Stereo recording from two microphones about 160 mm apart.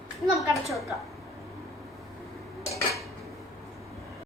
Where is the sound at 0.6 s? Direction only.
20° left (ahead or behind).